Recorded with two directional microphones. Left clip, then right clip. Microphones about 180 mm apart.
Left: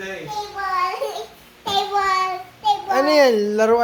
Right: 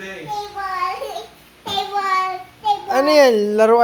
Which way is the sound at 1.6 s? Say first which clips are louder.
Left 1 dB; 15° left (ahead or behind).